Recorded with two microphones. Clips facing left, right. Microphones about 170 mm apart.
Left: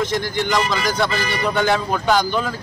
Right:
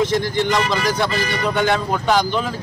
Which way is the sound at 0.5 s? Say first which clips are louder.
Right 1 dB; centre (ahead or behind).